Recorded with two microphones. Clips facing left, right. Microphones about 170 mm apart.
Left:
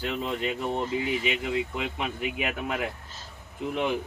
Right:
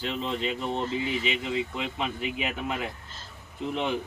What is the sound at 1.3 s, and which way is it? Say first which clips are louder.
Speech: left 1 dB; 60° left (ahead or behind).